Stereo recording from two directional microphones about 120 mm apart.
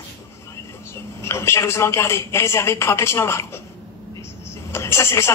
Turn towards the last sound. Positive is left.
turn(degrees=25)  # may be behind; listen again after turning